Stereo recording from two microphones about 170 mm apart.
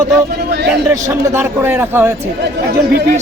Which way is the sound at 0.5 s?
80° right.